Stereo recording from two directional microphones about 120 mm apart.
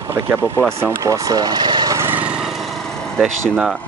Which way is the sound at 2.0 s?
15° right (ahead or behind).